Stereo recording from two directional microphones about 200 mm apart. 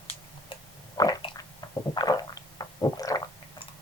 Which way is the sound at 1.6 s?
20° left (ahead or behind).